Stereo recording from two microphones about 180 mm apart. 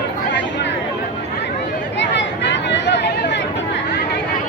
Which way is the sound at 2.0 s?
80° left.